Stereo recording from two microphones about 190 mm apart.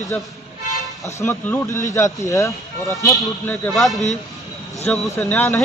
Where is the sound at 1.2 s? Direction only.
15° left (ahead or behind).